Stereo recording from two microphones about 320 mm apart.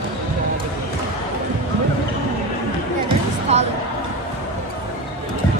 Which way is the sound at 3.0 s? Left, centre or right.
Centre.